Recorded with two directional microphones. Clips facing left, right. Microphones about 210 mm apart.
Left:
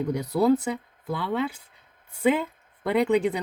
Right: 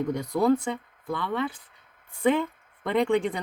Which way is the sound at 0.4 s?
5° left (ahead or behind).